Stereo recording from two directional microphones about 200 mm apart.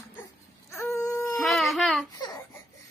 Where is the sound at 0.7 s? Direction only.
15° left (ahead or behind).